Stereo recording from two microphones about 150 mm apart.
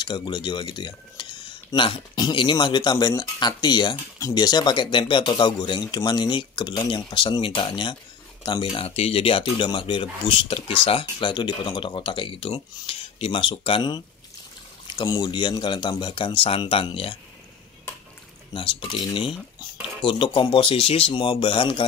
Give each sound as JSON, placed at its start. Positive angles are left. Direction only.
{"t": 0.0, "sound": "speech", "side_deg": 30}
{"t": 18.5, "sound": "speech", "side_deg": 35}